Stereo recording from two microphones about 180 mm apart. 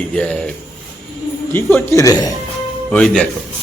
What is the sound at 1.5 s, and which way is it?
Speech, 10° left (ahead or behind).